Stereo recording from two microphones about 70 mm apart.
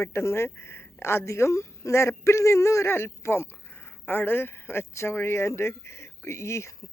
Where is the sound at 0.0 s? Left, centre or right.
Left.